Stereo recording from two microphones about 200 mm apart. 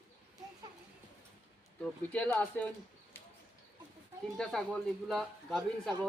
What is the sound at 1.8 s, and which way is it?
Speech, 5° left (ahead or behind).